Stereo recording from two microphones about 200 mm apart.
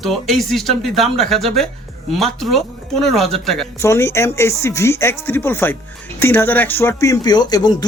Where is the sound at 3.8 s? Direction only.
15° left (ahead or behind).